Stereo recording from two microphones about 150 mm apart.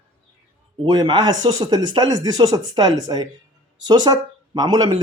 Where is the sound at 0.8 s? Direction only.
25° right (ahead or behind).